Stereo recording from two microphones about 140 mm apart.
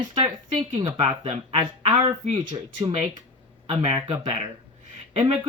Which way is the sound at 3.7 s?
45° right (ahead or behind).